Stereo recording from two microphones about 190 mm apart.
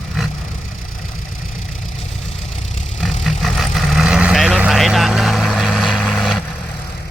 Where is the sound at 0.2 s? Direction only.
Centre (ahead or behind).